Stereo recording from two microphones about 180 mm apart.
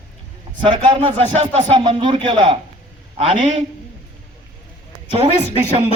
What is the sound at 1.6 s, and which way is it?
Speech, 25° right (ahead or behind).